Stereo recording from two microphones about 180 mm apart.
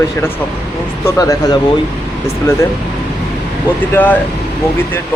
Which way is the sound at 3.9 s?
10° left (ahead or behind).